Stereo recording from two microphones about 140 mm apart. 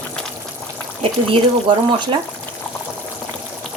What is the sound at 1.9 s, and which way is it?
Speech, 35° right (ahead or behind).